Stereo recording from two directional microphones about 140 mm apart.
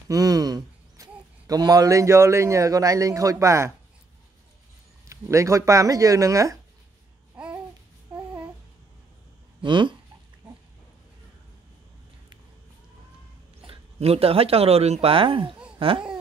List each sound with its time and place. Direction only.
0.1 s speech: 25° right (ahead or behind)
5.0 s speech: 20° right (ahead or behind)
9.6 s speech: 35° right (ahead or behind)
13.7 s speech: 45° right (ahead or behind)
15.8 s babbling: 40° right (ahead or behind)